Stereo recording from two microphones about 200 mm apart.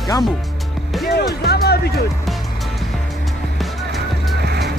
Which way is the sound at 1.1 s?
55° left (ahead or behind).